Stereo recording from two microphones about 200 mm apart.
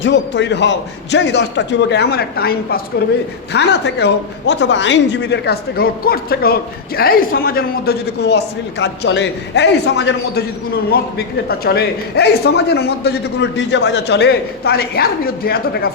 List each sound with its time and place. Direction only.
0.0 s a man's voice: 60° left (ahead or behind)
11.4 s a man's voice: 50° left (ahead or behind)